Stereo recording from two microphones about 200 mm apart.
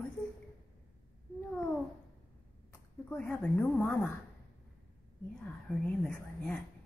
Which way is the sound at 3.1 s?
5° left (ahead or behind).